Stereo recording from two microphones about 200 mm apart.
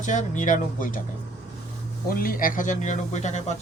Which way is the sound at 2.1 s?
45° left (ahead or behind).